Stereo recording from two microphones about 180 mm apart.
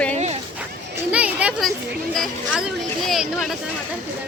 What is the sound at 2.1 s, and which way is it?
Speech, centre (ahead or behind).